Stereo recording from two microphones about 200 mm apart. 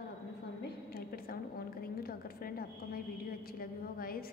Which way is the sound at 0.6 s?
50° left (ahead or behind).